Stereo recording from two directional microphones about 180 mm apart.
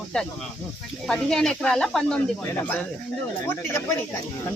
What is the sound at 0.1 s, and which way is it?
Speech, 5° left (ahead or behind).